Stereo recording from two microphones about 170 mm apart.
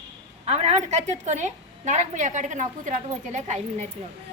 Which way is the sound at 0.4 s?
40° right (ahead or behind).